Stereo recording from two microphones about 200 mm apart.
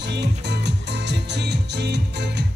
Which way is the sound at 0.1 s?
55° right (ahead or behind).